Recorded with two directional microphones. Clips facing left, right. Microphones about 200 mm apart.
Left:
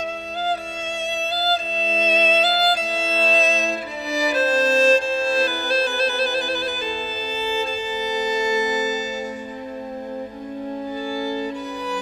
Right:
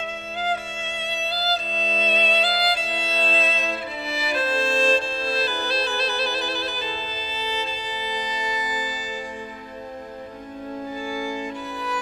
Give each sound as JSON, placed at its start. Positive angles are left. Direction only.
{"t": 2.0, "sound": "violin", "side_deg": 45}
{"t": 7.3, "sound": "music", "side_deg": 45}
{"t": 11.1, "sound": "music", "side_deg": 35}